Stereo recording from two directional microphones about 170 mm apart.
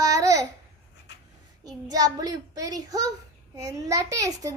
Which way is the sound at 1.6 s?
20° right (ahead or behind).